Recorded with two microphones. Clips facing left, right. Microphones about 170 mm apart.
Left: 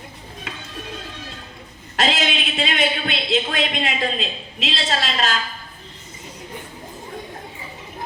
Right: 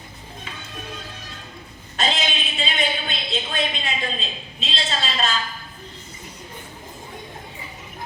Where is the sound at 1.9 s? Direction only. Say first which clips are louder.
Left 3 dB; 90° left.